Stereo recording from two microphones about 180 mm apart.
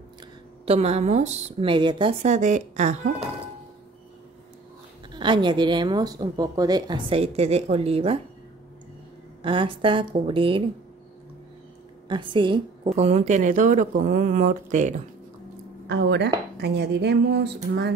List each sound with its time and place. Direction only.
0.7 s a woman's voice: 35° right (ahead or behind)
2.2 s a woman's voice: 40° right (ahead or behind)
5.1 s a woman's voice: 25° right (ahead or behind)
9.4 s a woman's voice: 30° right (ahead or behind)
12.1 s a woman's voice: 25° right (ahead or behind); by 15.0 s 45° right (ahead or behind)
15.9 s speech: 75° right (ahead or behind)